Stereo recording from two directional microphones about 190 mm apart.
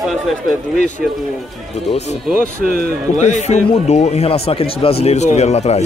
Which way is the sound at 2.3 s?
50° right (ahead or behind).